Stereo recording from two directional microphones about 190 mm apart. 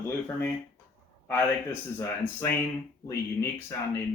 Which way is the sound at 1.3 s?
10° left (ahead or behind).